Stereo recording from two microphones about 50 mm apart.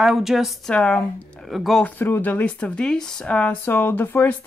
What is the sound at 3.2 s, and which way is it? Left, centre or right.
Speech, left.